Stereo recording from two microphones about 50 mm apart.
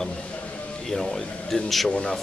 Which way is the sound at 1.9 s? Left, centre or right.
Left.